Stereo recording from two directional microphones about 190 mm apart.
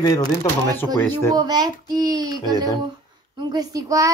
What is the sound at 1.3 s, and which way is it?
A child's voice, 20° right (ahead or behind).